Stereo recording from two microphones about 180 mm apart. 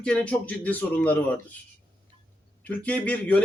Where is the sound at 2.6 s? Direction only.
10° left (ahead or behind).